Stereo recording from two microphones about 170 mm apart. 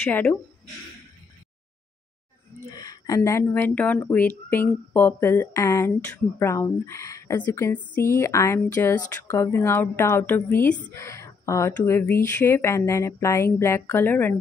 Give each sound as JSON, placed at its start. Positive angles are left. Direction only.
{"t": 0.0, "sound": "speech", "side_deg": 10}
{"t": 2.7, "sound": "speech", "side_deg": 20}